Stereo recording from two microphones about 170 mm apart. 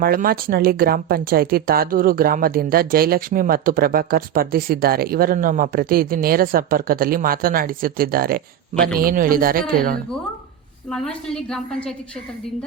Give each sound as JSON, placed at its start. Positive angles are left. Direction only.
{"t": 0.0, "sound": "speech", "side_deg": -60}
{"t": 10.8, "sound": "a woman's voice", "side_deg": 5}